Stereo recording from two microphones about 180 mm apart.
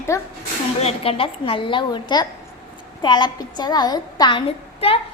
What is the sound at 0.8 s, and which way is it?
A woman's voice, 35° left (ahead or behind).